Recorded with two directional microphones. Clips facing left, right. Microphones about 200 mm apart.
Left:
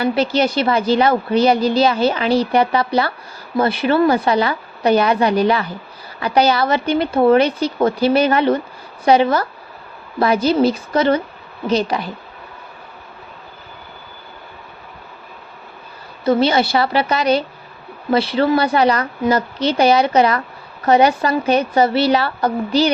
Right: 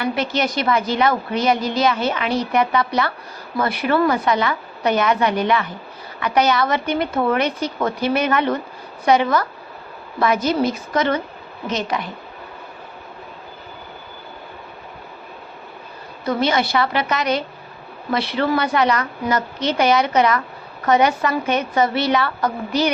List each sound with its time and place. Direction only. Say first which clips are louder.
0.0 s a woman's voice: left 5 dB; 30° left (ahead or behind)
16.2 s a woman's voice: left 5 dB; 30° left (ahead or behind)